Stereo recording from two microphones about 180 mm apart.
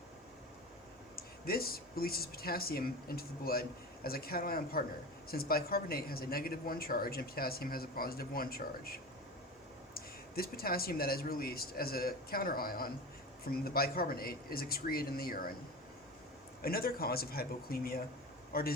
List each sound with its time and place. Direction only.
1.1 s speech: 55° left (ahead or behind)
16.6 s speech: 55° left (ahead or behind)